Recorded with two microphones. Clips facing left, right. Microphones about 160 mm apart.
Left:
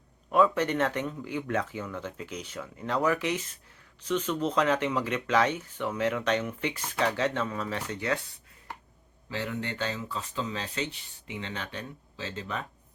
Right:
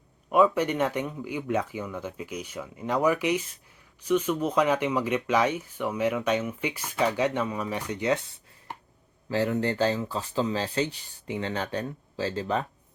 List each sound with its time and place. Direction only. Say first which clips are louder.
0.3 s speech: right 2 dB; 10° right (ahead or behind)
9.3 s speech: right 8 dB; 40° right (ahead or behind)